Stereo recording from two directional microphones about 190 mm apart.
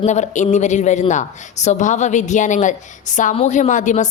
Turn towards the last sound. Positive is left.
turn(degrees=40)  # may be behind; listen again after turning